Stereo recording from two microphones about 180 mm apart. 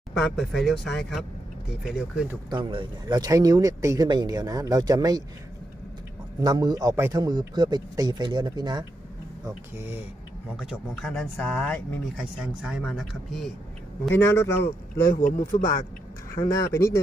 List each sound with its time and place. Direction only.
0.1 s speech: centre (ahead or behind)
2.5 s speech: 25° right (ahead or behind)
6.4 s speech: 20° right (ahead or behind)
10.6 s speech: centre (ahead or behind)
12.4 s speech: 5° right (ahead or behind)
14.1 s speech: 15° left (ahead or behind)
15.0 s speech: 50° left (ahead or behind)
16.4 s speech: 15° left (ahead or behind)